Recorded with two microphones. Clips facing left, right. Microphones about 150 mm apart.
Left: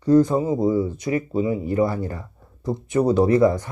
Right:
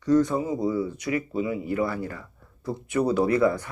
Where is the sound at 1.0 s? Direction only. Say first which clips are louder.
Left 4 dB; 35° left (ahead or behind).